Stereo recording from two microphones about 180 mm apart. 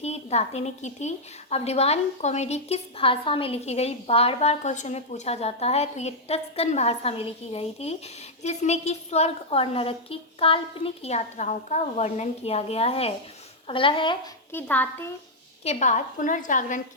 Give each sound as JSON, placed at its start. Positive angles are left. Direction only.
{"t": 0.0, "sound": "a woman's voice", "side_deg": 35}
{"t": 14.5, "sound": "speech", "side_deg": 10}
{"t": 15.6, "sound": "a woman's voice", "side_deg": 40}